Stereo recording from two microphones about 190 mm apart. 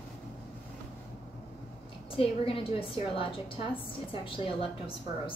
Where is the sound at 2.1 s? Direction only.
30° left (ahead or behind).